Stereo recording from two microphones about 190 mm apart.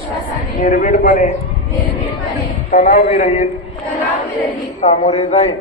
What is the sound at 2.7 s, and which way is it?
Speech, 50° left (ahead or behind).